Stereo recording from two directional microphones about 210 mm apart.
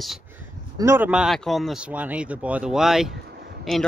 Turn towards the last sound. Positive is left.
turn(degrees=0)  # may be behind; listen again after turning